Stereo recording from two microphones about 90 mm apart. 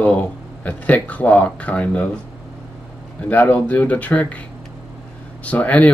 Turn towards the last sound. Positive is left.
turn(degrees=15)  # may be behind; listen again after turning